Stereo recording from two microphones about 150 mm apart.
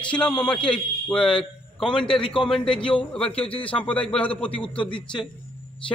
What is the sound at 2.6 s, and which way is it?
Speech, 35° left (ahead or behind).